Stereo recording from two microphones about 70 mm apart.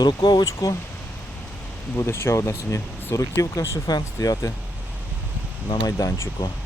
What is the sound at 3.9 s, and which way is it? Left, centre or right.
Speech, left.